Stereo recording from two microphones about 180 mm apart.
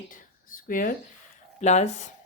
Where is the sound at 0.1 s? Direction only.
50° left (ahead or behind).